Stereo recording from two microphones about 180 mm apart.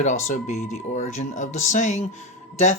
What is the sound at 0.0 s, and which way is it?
Speech, 40° left (ahead or behind).